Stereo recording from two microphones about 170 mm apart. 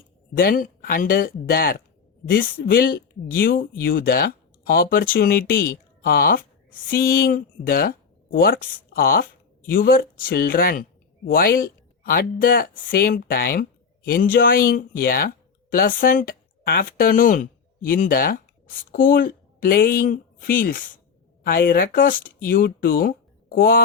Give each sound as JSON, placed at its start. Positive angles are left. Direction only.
{"t": 0.3, "sound": "speech", "side_deg": 55}